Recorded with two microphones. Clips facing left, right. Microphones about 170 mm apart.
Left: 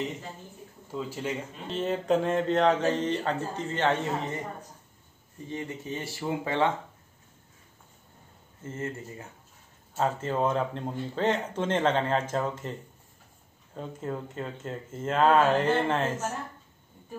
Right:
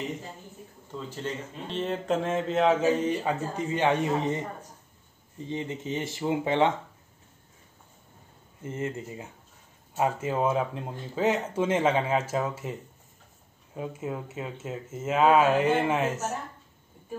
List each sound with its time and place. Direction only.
0.9 s speech: 10° left (ahead or behind); by 4.4 s 15° right (ahead or behind)
5.4 s speech: 20° right (ahead or behind)
8.6 s speech: 15° right (ahead or behind)
13.7 s speech: 10° right (ahead or behind)